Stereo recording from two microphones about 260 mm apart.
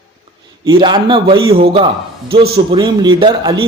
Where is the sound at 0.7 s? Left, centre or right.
Centre.